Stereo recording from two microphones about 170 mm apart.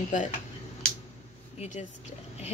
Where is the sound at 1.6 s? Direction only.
40° left (ahead or behind).